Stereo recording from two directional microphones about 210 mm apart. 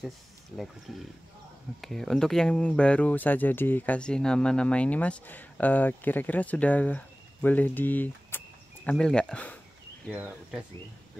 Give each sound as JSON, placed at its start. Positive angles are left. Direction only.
{"t": 0.9, "sound": "speech", "side_deg": 0}
{"t": 10.0, "sound": "speech", "side_deg": -5}